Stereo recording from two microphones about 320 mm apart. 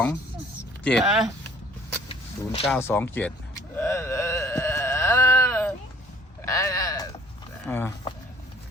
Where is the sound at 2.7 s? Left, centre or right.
Centre.